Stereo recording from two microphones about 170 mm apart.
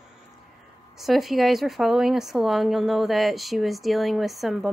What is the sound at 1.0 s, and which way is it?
A woman's voice, centre (ahead or behind).